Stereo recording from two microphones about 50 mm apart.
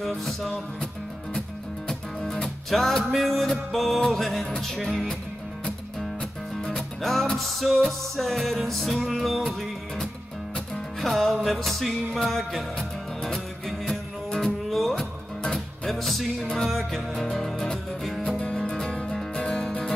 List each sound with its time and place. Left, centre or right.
0.0 s music: centre
2.4 s music: centre
6.6 s music: centre
16.0 s music: centre
18.4 s music: centre